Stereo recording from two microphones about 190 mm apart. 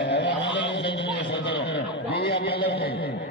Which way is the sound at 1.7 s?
65° left (ahead or behind).